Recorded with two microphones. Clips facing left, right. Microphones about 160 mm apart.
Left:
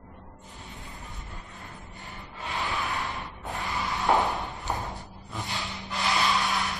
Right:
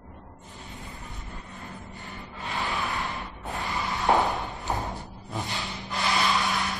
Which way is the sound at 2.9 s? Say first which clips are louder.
Right 1 dB; 20° right (ahead or behind).